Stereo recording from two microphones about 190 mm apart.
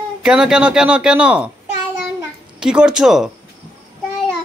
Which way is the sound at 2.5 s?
5° right (ahead or behind).